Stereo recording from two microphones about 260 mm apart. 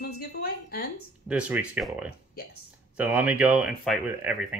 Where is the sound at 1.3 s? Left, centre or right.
Centre.